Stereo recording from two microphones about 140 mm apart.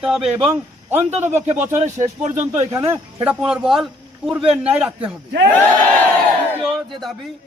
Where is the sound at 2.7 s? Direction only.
20° right (ahead or behind).